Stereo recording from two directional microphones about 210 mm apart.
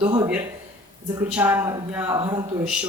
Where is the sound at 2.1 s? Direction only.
20° right (ahead or behind).